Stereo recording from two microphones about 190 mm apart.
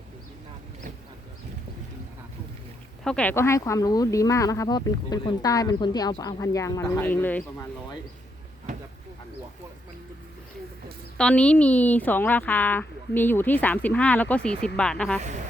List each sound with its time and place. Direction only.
3.0 s speech: 5° left (ahead or behind)
11.2 s speech: 5° left (ahead or behind)